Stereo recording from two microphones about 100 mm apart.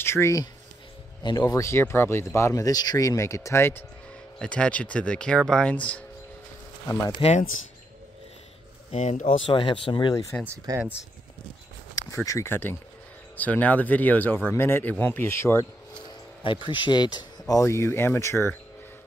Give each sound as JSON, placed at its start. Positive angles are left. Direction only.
{"t": 0.0, "sound": "speech", "side_deg": 25}
{"t": 1.2, "sound": "speech", "side_deg": 40}
{"t": 4.4, "sound": "speech", "side_deg": 10}
{"t": 7.2, "sound": "speech", "side_deg": 60}
{"t": 8.9, "sound": "speech", "side_deg": 65}
{"t": 10.3, "sound": "speech", "side_deg": 15}
{"t": 12.3, "sound": "speech", "side_deg": 25}
{"t": 16.7, "sound": "speech", "side_deg": 50}